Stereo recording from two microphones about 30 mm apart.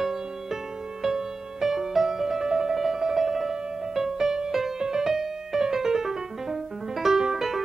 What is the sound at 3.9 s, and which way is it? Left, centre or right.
Music, centre.